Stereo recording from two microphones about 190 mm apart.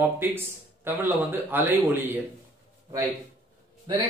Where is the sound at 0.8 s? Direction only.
10° right (ahead or behind).